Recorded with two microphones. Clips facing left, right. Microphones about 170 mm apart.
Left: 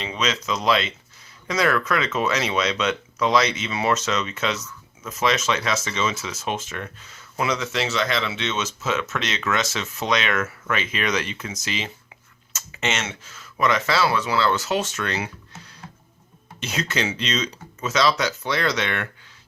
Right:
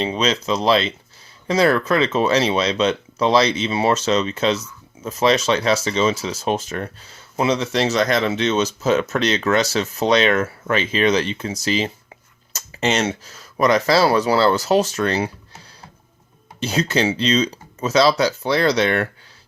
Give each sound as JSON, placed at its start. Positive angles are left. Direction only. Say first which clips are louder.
{"t": 0.0, "sound": "speech", "louder": "right 6 dB", "side_deg": -35}